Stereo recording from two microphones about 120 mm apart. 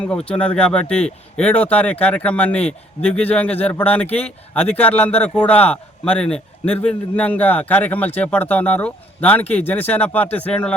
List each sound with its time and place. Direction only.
0.0 s speech: 10° left (ahead or behind)